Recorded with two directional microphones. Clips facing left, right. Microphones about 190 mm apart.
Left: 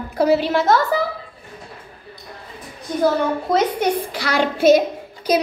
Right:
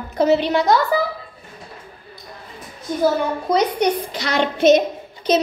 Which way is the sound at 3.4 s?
5° left (ahead or behind).